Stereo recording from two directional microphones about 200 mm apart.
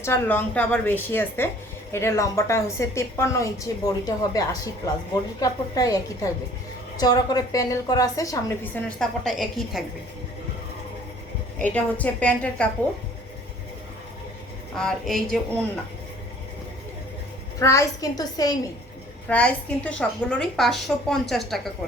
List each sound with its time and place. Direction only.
0.0 s a woman's voice: 10° left (ahead or behind)
11.6 s a woman's voice: 10° left (ahead or behind)
14.8 s a woman's voice: centre (ahead or behind)
17.6 s a woman's voice: 15° left (ahead or behind)
19.3 s a woman's voice: 5° left (ahead or behind)